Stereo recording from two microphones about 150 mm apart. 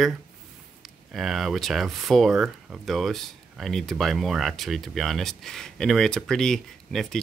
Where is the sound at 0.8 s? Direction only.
Centre (ahead or behind).